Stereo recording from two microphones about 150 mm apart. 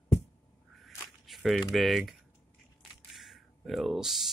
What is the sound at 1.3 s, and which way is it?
Speech, centre (ahead or behind).